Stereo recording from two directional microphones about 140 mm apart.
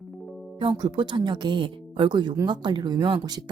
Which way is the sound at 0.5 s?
35° right (ahead or behind).